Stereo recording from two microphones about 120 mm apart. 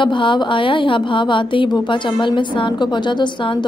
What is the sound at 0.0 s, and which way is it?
Speech, 45° left (ahead or behind).